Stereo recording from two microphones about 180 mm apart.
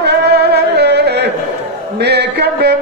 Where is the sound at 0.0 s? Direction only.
65° right (ahead or behind).